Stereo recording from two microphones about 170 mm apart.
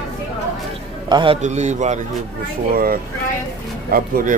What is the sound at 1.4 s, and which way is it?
Speech, 45° right (ahead or behind).